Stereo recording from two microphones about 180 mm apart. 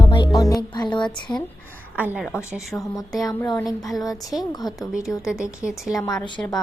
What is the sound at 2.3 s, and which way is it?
A woman's voice, 15° left (ahead or behind).